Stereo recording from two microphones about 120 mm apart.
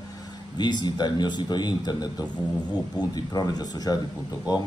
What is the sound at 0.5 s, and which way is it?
Speech, 35° left (ahead or behind).